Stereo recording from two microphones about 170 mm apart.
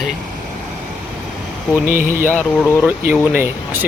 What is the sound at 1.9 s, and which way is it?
Speech, 55° right (ahead or behind).